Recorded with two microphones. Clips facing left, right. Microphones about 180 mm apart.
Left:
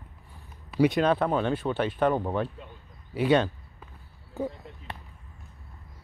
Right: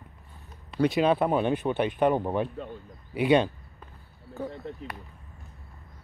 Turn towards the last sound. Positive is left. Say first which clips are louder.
# even
turn(degrees=20)  # may be behind; listen again after turning